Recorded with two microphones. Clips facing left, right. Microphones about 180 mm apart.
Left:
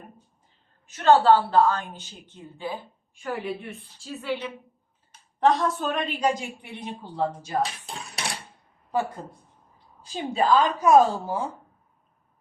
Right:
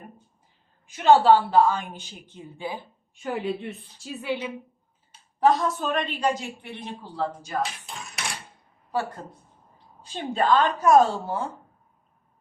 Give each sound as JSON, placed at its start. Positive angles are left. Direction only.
{"t": 0.9, "sound": "a woman's voice", "side_deg": -10}
{"t": 5.4, "sound": "a woman's voice", "side_deg": 0}
{"t": 6.6, "sound": "speech", "side_deg": 15}
{"t": 7.6, "sound": "speech", "side_deg": 35}
{"t": 10.1, "sound": "a woman's voice", "side_deg": 5}